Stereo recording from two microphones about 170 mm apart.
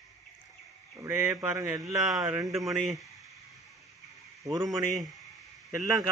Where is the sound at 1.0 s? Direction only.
15° right (ahead or behind).